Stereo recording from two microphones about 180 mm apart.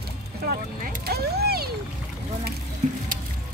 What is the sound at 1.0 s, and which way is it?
Speech, 60° right (ahead or behind).